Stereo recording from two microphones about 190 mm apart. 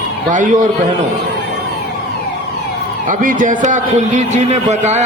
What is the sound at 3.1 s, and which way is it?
A man's voice, 45° right (ahead or behind).